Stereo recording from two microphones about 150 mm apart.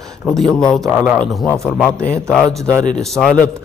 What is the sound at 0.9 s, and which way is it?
A man's voice, 10° right (ahead or behind).